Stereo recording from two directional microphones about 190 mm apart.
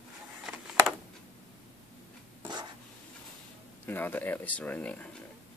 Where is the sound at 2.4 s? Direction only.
20° right (ahead or behind).